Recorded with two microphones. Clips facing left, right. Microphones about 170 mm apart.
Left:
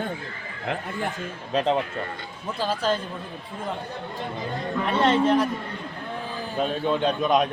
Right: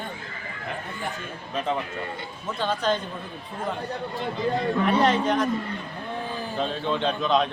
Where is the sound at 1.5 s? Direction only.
90° left.